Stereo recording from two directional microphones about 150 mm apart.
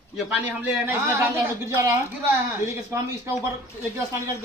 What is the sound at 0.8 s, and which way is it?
A man's voice, 20° right (ahead or behind).